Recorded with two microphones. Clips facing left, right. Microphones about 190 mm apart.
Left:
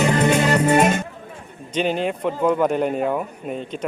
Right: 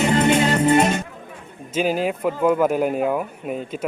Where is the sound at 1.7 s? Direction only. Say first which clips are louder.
Right 1 dB; 5° right (ahead or behind).